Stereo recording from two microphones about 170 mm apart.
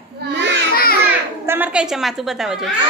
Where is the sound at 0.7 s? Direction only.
60° left (ahead or behind).